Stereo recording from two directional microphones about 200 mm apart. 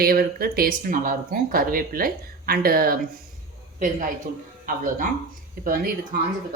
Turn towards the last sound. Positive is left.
turn(degrees=-45)  # may be behind; listen again after turning